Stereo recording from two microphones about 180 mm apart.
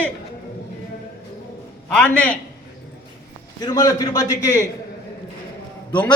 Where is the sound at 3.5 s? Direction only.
20° left (ahead or behind).